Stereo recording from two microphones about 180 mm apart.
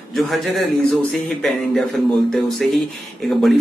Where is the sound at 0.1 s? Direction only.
Centre (ahead or behind).